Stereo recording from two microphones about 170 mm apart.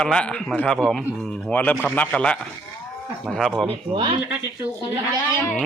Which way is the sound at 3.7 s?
30° right (ahead or behind).